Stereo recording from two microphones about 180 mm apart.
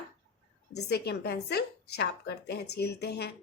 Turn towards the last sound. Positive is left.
turn(degrees=65)  # may be behind; listen again after turning